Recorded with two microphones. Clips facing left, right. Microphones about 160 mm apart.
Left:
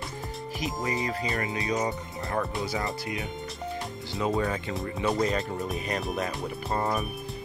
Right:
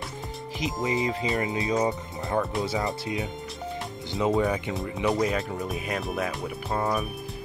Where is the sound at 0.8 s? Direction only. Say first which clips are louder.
Right 4 dB; 20° right (ahead or behind).